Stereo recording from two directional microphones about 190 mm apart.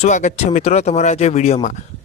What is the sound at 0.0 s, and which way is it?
Speech, 40° left (ahead or behind).